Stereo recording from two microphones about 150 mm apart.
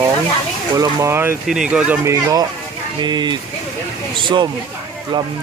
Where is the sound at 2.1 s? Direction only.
20° right (ahead or behind).